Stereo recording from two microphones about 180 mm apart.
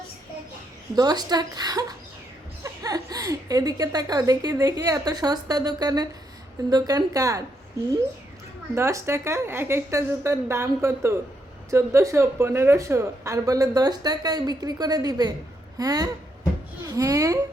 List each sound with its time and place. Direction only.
0.9 s speech: 20° right (ahead or behind)
8.7 s a woman's voice: 15° right (ahead or behind)